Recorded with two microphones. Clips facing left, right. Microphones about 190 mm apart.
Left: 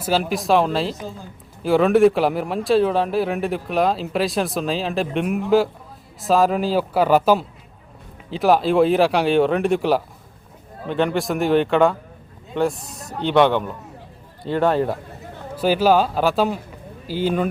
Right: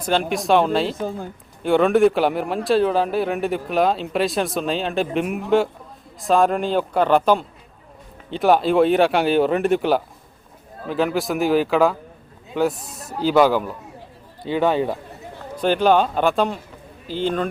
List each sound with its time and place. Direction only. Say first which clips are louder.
0.0 s speech: even; 5° left (ahead or behind)
0.9 s a woman's voice: right 6 dB; 55° right (ahead or behind)
1.6 s a man's voice: left 1 dB; centre (ahead or behind)